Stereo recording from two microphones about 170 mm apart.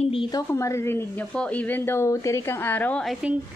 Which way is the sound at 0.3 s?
15° left (ahead or behind).